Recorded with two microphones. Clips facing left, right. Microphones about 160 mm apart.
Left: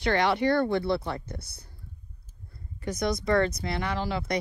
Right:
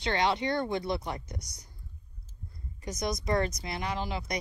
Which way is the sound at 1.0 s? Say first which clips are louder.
Left 3 dB; 65° left (ahead or behind).